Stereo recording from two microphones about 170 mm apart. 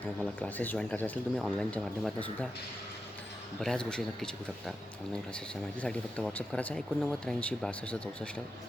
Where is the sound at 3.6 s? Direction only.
5° left (ahead or behind).